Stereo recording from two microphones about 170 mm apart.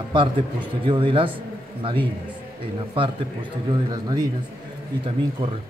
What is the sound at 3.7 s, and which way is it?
Speech, 25° right (ahead or behind).